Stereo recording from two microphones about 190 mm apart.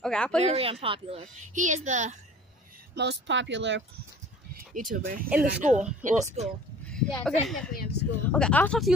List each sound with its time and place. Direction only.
0.0 s speech: 5° left (ahead or behind)
0.4 s a woman's voice: 30° right (ahead or behind)
3.0 s speech: 65° right (ahead or behind)
4.6 s a woman's voice: 45° right (ahead or behind)
6.9 s a sound: 5° left (ahead or behind)
7.2 s speech: centre (ahead or behind)
7.7 s speech: 55° left (ahead or behind)
8.3 s speech: 5° left (ahead or behind)